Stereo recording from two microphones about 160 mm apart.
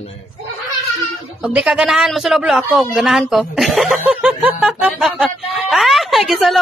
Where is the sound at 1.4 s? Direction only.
5° right (ahead or behind).